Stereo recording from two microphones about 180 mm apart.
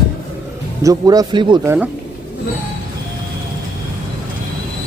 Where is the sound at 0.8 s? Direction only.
20° right (ahead or behind).